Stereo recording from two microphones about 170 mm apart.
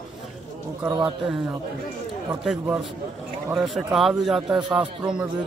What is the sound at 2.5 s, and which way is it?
A man's voice, 5° right (ahead or behind).